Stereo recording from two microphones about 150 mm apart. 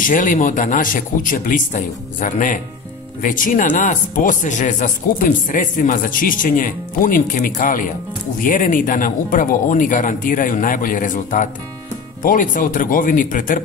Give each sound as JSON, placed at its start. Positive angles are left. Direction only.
{"t": 0.0, "sound": "speech", "side_deg": 60}